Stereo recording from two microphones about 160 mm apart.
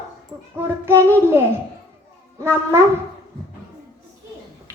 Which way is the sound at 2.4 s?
15° right (ahead or behind).